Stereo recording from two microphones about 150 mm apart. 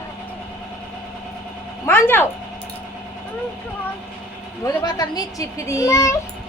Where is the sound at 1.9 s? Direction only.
15° left (ahead or behind).